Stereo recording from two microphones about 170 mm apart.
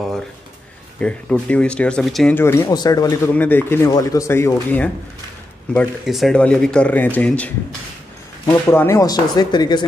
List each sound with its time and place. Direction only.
0.9 s speech: 5° left (ahead or behind)
2.3 s speech: 15° left (ahead or behind)
3.3 s speech: 10° left (ahead or behind)